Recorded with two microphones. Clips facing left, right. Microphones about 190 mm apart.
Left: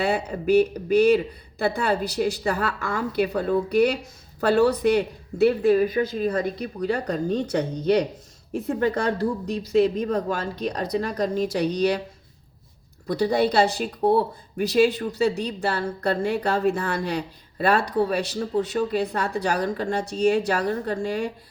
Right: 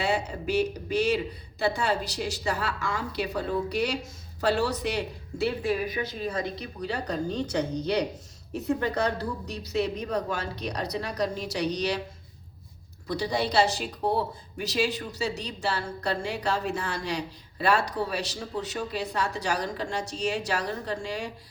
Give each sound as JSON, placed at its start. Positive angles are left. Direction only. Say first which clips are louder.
{"t": 0.0, "sound": "speech", "louder": "left 4 dB", "side_deg": 55}
{"t": 13.1, "sound": "speech", "louder": "left 7 dB", "side_deg": 55}